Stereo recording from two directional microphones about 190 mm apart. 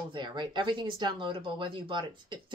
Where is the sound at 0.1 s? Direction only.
25° right (ahead or behind).